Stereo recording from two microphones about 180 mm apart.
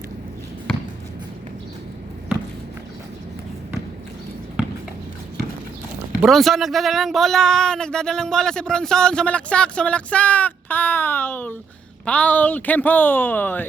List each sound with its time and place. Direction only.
6.2 s speech: centre (ahead or behind)